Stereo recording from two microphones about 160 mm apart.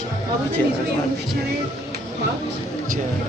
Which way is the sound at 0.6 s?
15° left (ahead or behind).